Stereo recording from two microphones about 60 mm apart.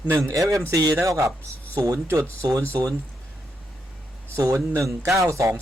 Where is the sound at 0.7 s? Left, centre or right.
Right.